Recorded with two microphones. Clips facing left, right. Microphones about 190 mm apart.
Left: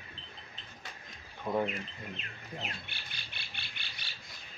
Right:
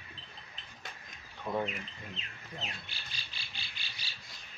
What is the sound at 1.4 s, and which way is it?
Speech, 10° left (ahead or behind).